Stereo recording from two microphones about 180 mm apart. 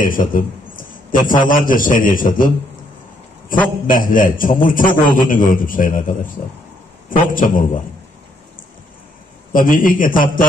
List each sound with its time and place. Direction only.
0.0 s a man's voice: 50° left (ahead or behind)
9.5 s a man's voice: 50° left (ahead or behind)